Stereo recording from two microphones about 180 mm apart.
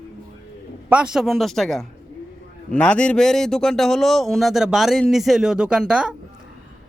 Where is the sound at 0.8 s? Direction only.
5° right (ahead or behind).